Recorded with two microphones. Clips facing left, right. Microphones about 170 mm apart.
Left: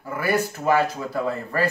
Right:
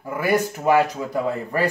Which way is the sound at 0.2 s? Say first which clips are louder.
Right 2 dB; 15° right (ahead or behind).